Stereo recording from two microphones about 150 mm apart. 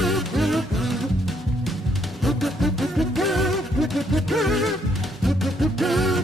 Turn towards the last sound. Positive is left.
turn(degrees=0)  # may be behind; listen again after turning